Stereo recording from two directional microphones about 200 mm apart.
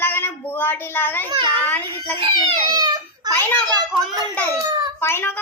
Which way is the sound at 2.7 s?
20° right (ahead or behind).